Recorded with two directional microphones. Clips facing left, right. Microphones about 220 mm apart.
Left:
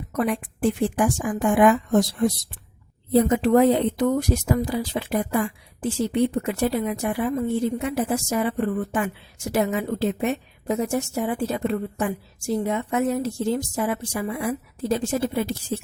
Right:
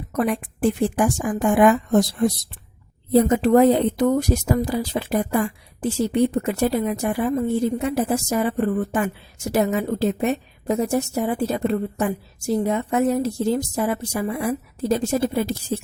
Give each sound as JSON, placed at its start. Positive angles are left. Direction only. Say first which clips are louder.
{"t": 0.2, "sound": "speech", "louder": "right 2 dB", "side_deg": -40}